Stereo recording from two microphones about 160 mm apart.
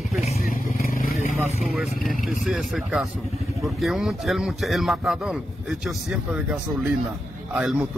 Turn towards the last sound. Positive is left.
turn(degrees=-5)  # may be behind; listen again after turning